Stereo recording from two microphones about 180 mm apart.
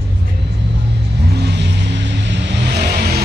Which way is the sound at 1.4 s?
70° right (ahead or behind).